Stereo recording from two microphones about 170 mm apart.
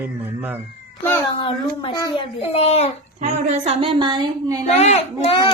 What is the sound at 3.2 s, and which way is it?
A woman's voice, 40° right (ahead or behind).